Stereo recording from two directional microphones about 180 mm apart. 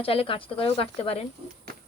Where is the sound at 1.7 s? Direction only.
60° right (ahead or behind).